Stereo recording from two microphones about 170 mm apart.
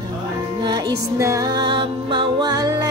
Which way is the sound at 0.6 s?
25° right (ahead or behind).